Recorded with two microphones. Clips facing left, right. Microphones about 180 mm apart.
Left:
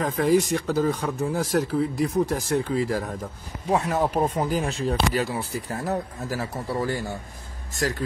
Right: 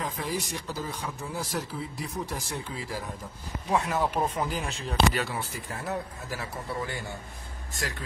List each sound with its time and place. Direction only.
0.0 s speech: 55° left (ahead or behind)
3.7 s speech: 40° left (ahead or behind)